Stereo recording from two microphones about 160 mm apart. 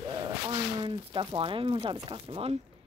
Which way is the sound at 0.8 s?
30° right (ahead or behind).